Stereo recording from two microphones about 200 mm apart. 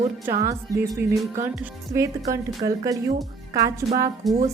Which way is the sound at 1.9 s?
15° right (ahead or behind).